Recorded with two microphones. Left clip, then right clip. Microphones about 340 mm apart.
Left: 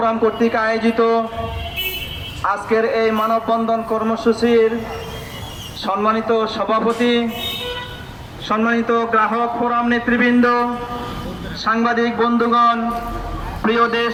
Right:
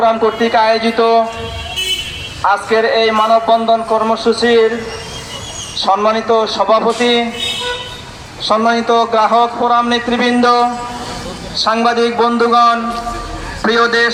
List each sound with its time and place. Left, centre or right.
0.0 s speech: right
2.5 s speech: right
5.8 s speech: right
8.4 s a man's voice: centre